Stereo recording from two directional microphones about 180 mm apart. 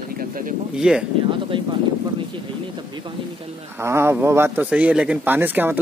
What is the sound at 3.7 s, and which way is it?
Speech, 15° right (ahead or behind).